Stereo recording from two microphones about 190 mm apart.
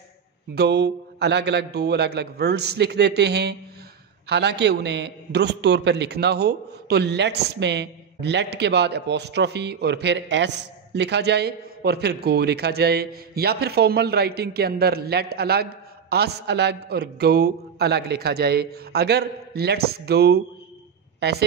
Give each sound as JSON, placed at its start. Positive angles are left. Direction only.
{"t": 0.6, "sound": "a man's voice", "side_deg": -60}